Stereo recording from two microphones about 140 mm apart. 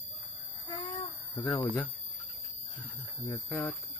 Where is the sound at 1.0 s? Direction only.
15° left (ahead or behind).